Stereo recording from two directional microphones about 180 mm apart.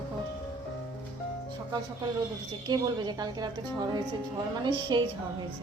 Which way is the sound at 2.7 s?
25° right (ahead or behind).